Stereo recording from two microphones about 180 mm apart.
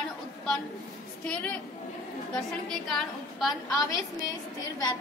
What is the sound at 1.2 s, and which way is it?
A woman's voice, 5° left (ahead or behind).